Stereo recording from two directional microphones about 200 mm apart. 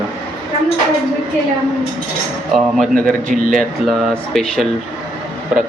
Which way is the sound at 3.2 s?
40° right (ahead or behind).